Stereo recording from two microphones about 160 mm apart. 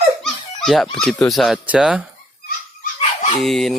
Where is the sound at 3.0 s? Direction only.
35° left (ahead or behind).